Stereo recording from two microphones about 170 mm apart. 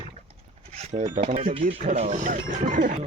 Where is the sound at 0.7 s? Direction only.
45° right (ahead or behind).